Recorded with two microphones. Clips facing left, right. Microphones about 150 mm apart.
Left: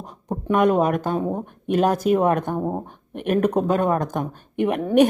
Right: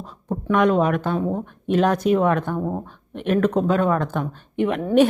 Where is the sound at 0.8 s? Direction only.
40° left (ahead or behind).